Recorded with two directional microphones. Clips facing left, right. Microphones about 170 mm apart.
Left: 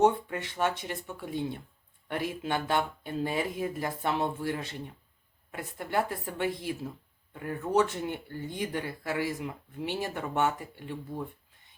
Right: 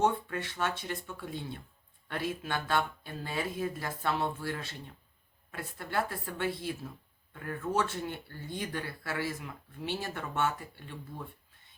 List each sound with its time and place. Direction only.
0.0 s speech: 20° left (ahead or behind)